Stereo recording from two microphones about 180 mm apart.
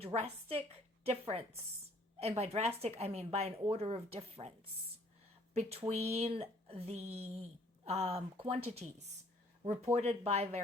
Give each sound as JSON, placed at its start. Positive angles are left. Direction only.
{"t": 0.0, "sound": "a woman's voice", "side_deg": -35}
{"t": 5.5, "sound": "speech", "side_deg": -35}